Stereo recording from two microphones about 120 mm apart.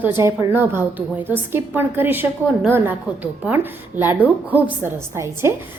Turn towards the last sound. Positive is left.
turn(degrees=-20)  # may be behind; listen again after turning